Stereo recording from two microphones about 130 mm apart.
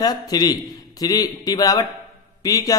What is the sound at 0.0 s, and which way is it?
A man's voice, 30° left (ahead or behind).